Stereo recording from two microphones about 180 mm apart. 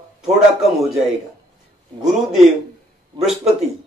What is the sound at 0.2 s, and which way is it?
Speech, centre (ahead or behind).